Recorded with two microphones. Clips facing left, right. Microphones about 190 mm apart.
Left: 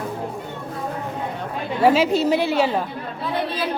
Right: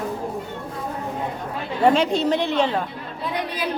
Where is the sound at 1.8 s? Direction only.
5° left (ahead or behind).